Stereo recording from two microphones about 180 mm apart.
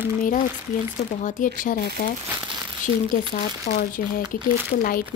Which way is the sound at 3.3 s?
55° left (ahead or behind).